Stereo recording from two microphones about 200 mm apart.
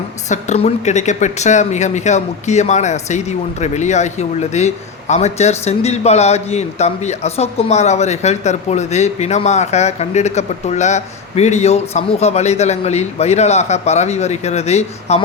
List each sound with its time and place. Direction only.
0.3 s speech: 35° left (ahead or behind)